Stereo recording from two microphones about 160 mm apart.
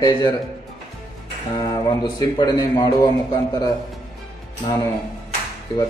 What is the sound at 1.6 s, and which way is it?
A man's voice, 25° left (ahead or behind).